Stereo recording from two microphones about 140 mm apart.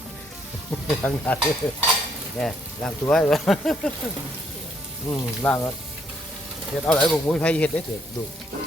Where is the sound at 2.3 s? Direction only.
Centre (ahead or behind).